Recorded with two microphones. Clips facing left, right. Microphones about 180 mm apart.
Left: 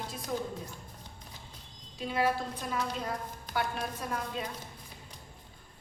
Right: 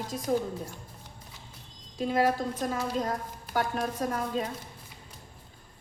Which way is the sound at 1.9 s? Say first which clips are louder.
Right 4 dB; 45° right (ahead or behind).